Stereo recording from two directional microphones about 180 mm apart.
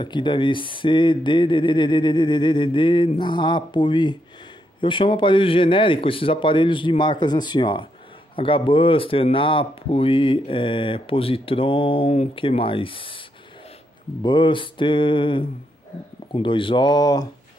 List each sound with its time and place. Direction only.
0.0 s speech: 25° left (ahead or behind)
14.2 s speech: 25° left (ahead or behind)